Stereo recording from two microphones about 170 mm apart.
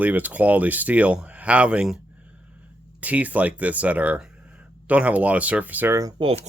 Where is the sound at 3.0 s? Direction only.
10° right (ahead or behind).